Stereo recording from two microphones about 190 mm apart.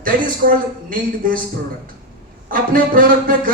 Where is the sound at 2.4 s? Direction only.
45° right (ahead or behind).